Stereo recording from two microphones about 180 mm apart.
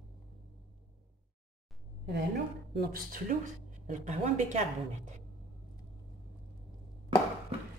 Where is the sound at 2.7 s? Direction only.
60° right (ahead or behind).